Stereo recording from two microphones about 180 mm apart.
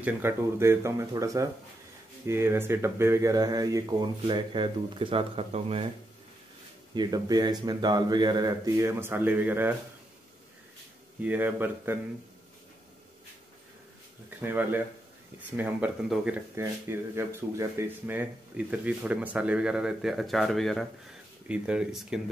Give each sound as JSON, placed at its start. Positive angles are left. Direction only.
{"t": 0.0, "sound": "speech", "side_deg": -15}
{"t": 7.0, "sound": "speech", "side_deg": -20}
{"t": 11.2, "sound": "speech", "side_deg": -10}
{"t": 14.4, "sound": "speech", "side_deg": -10}